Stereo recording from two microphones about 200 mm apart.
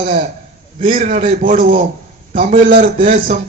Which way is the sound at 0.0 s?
45° right (ahead or behind).